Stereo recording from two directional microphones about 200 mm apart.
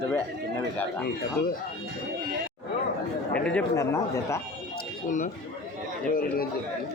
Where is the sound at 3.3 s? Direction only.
5° left (ahead or behind).